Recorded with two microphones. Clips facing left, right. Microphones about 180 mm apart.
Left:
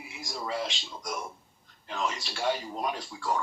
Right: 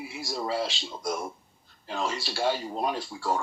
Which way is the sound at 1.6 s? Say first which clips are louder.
Right 1 dB; 35° right (ahead or behind).